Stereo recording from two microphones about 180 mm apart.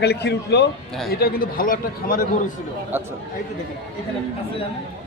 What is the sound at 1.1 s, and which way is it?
A man's voice, 60° left (ahead or behind).